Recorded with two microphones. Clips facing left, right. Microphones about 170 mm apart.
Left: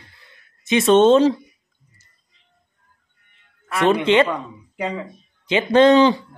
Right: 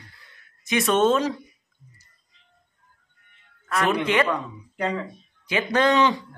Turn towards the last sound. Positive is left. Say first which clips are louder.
# left 7 dB
turn(degrees=30)  # may be behind; listen again after turning